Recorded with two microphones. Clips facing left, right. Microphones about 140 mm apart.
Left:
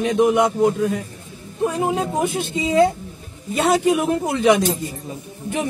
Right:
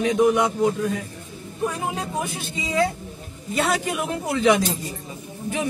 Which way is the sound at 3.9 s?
20° left (ahead or behind).